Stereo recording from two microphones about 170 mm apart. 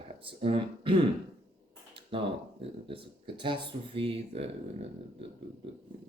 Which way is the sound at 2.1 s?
35° right (ahead or behind).